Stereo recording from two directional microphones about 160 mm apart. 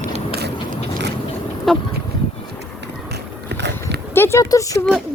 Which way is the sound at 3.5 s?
90° right.